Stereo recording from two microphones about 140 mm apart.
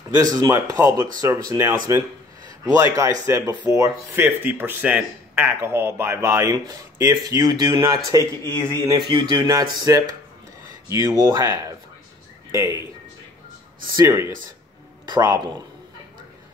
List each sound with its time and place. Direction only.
0.2 s speech: 25° right (ahead or behind)
12.4 s a sound: 25° right (ahead or behind)
13.9 s speech: 20° right (ahead or behind)